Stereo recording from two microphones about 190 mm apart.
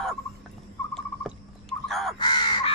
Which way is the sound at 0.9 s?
Centre (ahead or behind).